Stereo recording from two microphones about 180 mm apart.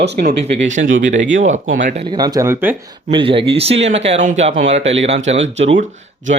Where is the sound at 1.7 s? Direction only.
50° right (ahead or behind).